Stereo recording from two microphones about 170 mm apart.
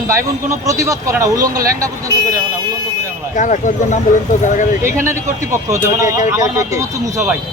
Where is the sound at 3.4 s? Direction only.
50° left (ahead or behind).